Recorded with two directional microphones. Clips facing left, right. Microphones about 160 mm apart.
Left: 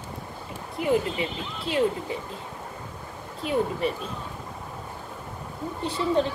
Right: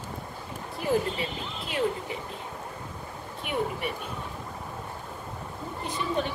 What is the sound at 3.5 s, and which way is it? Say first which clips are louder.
Speech: left 5 dB; 30° left (ahead or behind).